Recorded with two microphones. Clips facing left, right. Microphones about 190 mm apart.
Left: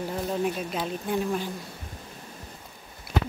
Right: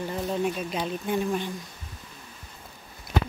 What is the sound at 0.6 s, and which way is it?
Speech, centre (ahead or behind).